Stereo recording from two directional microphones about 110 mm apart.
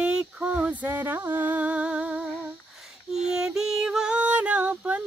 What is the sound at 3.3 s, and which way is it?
Music, 5° right (ahead or behind).